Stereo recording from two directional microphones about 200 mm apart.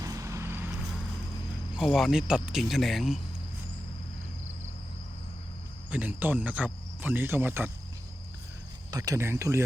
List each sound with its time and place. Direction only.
0.0 s vehicle: 15° right (ahead or behind)
1.7 s speech: centre (ahead or behind)
5.9 s speech: 10° right (ahead or behind)
8.9 s speech: 15° right (ahead or behind)